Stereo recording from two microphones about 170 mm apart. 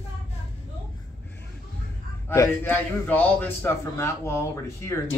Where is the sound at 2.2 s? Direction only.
15° left (ahead or behind).